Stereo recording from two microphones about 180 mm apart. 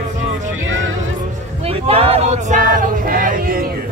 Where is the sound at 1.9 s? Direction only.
35° right (ahead or behind); by 3.6 s 50° right (ahead or behind).